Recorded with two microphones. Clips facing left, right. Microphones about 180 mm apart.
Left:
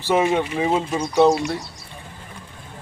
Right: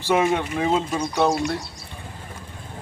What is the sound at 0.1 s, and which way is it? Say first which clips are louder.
Speech: left 1 dB; 5° left (ahead or behind).